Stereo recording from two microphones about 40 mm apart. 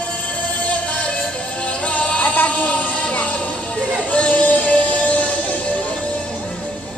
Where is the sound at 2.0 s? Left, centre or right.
Left.